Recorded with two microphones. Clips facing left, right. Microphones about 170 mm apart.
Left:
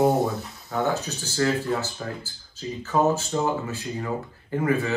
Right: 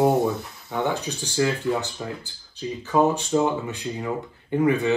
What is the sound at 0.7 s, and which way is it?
Speech, 15° right (ahead or behind).